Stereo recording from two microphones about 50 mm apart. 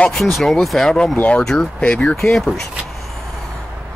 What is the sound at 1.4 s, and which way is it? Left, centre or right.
Speech, centre.